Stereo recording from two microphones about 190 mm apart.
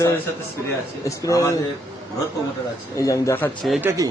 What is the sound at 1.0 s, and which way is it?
Speech, 15° left (ahead or behind).